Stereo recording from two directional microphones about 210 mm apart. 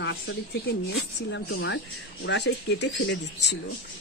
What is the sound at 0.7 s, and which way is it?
Speech, 55° left (ahead or behind).